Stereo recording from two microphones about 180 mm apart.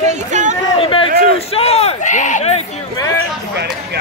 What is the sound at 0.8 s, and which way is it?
A man's voice, 30° left (ahead or behind).